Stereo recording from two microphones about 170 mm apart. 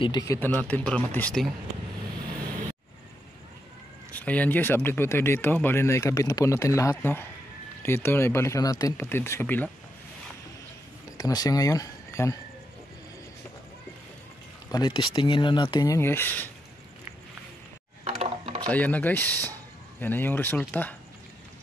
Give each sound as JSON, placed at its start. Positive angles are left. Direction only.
{"t": 0.0, "sound": "speech", "side_deg": 20}
{"t": 0.6, "sound": "speech", "side_deg": 10}
{"t": 4.1, "sound": "speech", "side_deg": 10}
{"t": 11.1, "sound": "speech", "side_deg": 20}
{"t": 14.7, "sound": "speech", "side_deg": 25}
{"t": 18.0, "sound": "a sound", "side_deg": -30}
{"t": 18.7, "sound": "speech", "side_deg": 10}